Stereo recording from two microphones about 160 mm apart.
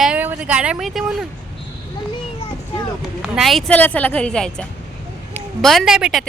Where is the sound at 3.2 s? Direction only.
Centre (ahead or behind).